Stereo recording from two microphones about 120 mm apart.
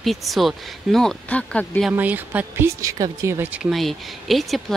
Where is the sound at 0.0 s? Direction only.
Centre (ahead or behind).